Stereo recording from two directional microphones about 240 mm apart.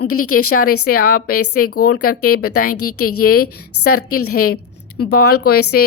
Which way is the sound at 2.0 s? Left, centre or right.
Left.